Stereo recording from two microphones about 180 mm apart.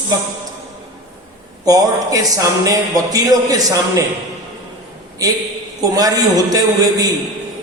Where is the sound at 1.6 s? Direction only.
20° right (ahead or behind).